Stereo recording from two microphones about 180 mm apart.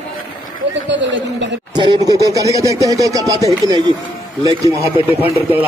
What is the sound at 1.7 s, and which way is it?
Speech, 25° right (ahead or behind).